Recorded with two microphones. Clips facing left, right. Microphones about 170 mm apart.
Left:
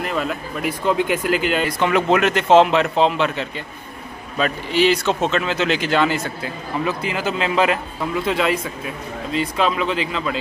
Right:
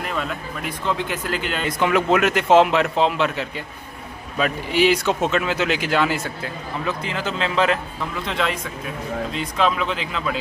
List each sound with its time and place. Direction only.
0.0 s speech: 5° left (ahead or behind)
1.8 s speech: 5° right (ahead or behind)
6.8 s speech: 10° left (ahead or behind)